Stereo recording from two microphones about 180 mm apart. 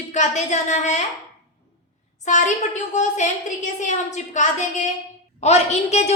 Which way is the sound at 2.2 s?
40° left (ahead or behind).